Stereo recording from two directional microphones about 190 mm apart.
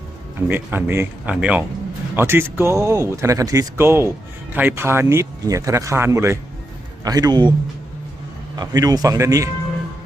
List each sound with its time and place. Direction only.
0.4 s speech: 10° right (ahead or behind)
8.5 s speech: 20° right (ahead or behind)